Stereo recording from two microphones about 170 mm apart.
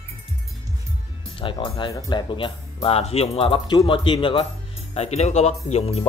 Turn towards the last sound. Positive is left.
turn(degrees=40)  # may be behind; listen again after turning